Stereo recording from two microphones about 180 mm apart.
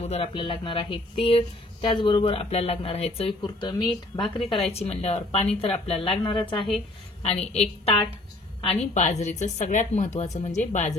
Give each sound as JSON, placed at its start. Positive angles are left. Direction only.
{"t": 0.1, "sound": "a woman's voice", "side_deg": 30}